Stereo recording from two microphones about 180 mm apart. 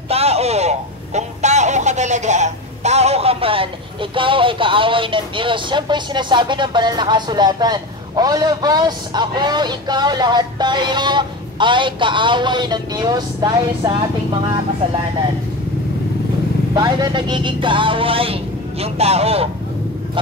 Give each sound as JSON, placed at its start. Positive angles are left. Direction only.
{"t": 0.1, "sound": "speech", "side_deg": -35}
{"t": 16.7, "sound": "music", "side_deg": -25}